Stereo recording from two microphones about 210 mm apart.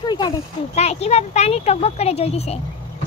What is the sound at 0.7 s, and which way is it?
A child's voice, 30° left (ahead or behind).